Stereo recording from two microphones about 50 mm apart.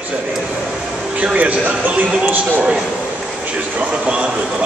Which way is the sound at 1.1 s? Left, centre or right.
Right.